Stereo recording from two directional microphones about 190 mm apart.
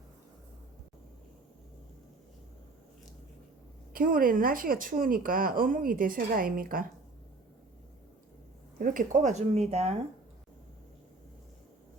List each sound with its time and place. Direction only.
3.9 s speech: 50° right (ahead or behind)
8.8 s speech: 45° right (ahead or behind)